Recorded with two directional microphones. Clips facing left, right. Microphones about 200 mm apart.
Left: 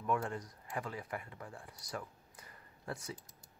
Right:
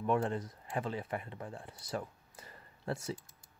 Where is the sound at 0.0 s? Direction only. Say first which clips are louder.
Right 4 dB; 25° right (ahead or behind).